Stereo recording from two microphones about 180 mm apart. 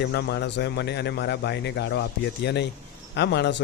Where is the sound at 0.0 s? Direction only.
65° left (ahead or behind).